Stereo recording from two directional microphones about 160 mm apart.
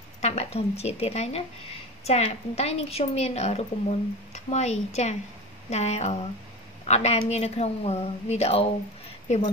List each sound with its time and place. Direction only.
0.2 s a woman's voice: 45° left (ahead or behind)